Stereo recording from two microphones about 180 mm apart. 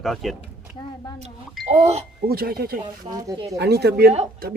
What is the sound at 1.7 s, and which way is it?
Speech, 35° right (ahead or behind).